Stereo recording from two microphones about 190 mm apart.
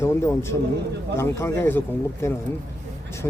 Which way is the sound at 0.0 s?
15° left (ahead or behind).